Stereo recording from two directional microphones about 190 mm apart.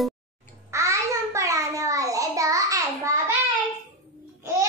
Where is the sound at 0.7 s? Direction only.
15° right (ahead or behind).